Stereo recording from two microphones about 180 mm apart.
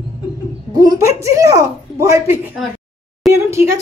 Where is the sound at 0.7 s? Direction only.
20° right (ahead or behind).